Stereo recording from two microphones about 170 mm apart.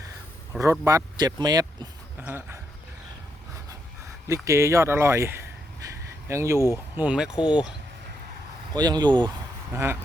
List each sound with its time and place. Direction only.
0.6 s speech: 20° right (ahead or behind)
2.2 s speech: 10° right (ahead or behind)
4.3 s speech: 15° right (ahead or behind)
8.7 s speech: 25° right (ahead or behind)
9.7 s speech: 15° right (ahead or behind)